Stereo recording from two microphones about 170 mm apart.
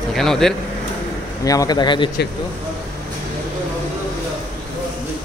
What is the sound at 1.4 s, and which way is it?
Speech, 20° left (ahead or behind).